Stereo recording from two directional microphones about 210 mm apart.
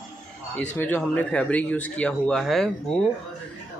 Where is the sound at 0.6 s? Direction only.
10° left (ahead or behind).